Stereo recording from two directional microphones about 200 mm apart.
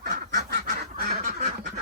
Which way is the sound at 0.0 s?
55° right (ahead or behind).